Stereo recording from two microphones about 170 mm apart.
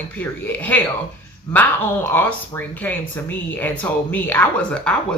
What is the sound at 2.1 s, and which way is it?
Speech, 10° left (ahead or behind).